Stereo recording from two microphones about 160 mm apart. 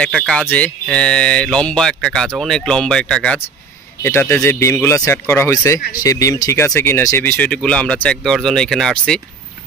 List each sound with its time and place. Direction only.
0.0 s speech: 5° left (ahead or behind)
5.8 s speech: 60° left (ahead or behind)
6.0 s speech: 20° left (ahead or behind); by 9.2 s 5° left (ahead or behind)